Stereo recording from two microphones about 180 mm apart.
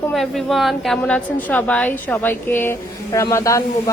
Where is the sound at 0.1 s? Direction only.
Centre (ahead or behind).